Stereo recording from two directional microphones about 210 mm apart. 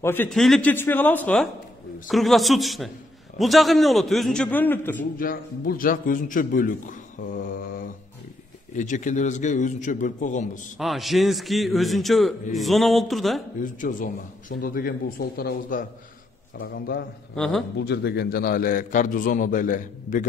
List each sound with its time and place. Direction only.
0.0 s a man's voice: 10° left (ahead or behind)
5.1 s a man's voice: 40° left (ahead or behind)
10.8 s a man's voice: centre (ahead or behind)
13.6 s a man's voice: 40° left (ahead or behind)
17.4 s a man's voice: centre (ahead or behind)
17.7 s a man's voice: 50° left (ahead or behind)